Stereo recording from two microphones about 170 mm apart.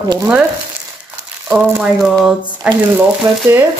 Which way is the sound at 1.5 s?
5° right (ahead or behind).